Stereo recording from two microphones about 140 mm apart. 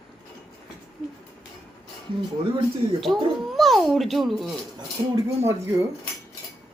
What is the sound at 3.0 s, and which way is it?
Speech, centre (ahead or behind).